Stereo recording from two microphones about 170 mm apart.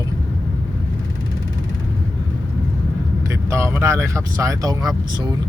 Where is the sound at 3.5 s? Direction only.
15° right (ahead or behind).